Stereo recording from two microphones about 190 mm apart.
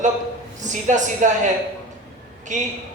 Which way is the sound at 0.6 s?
40° right (ahead or behind).